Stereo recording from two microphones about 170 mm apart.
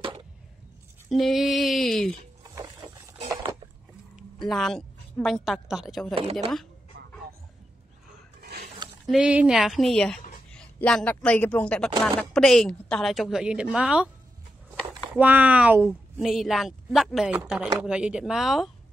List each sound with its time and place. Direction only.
1.1 s a woman's voice: centre (ahead or behind)
2.5 s a sound: 20° right (ahead or behind)
4.5 s a woman's voice: 5° left (ahead or behind)
6.5 s fowl: centre (ahead or behind)
8.4 s a sound: 70° right (ahead or behind)
9.1 s a woman's voice: 5° right (ahead or behind)
15.1 s a woman's voice: 10° right (ahead or behind)